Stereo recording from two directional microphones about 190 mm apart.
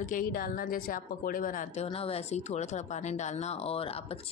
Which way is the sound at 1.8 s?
30° left (ahead or behind).